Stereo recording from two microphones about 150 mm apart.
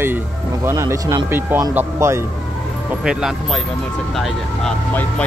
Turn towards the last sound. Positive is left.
turn(degrees=0)  # may be behind; listen again after turning